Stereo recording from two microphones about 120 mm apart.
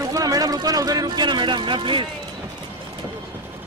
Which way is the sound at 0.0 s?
30° right (ahead or behind).